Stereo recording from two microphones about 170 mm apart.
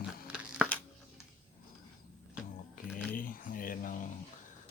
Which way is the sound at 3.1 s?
55° left (ahead or behind).